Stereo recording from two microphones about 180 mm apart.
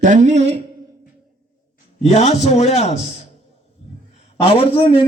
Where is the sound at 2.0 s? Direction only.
35° left (ahead or behind).